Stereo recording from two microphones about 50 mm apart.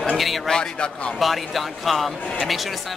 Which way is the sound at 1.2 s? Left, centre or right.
Centre.